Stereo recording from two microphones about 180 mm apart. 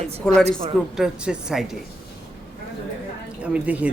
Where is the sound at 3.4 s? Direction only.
10° right (ahead or behind).